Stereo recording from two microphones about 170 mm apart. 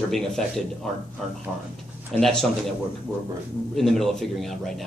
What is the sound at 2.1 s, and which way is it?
Speech, 5° left (ahead or behind).